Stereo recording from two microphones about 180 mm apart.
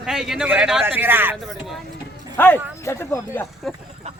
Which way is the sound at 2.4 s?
10° left (ahead or behind).